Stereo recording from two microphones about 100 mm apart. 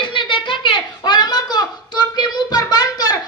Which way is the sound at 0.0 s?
55° left (ahead or behind).